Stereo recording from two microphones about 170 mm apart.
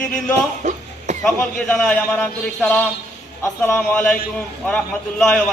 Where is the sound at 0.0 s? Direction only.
5° left (ahead or behind).